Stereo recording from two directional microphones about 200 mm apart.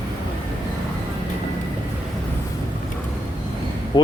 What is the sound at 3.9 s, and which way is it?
Speech, 25° left (ahead or behind).